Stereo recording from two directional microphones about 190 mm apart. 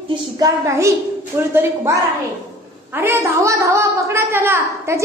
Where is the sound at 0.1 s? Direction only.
15° right (ahead or behind).